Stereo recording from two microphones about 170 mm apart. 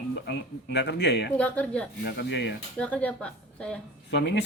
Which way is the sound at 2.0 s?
85° left.